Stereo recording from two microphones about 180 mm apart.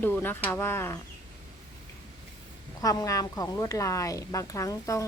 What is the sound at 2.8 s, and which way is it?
A woman's voice, 20° left (ahead or behind).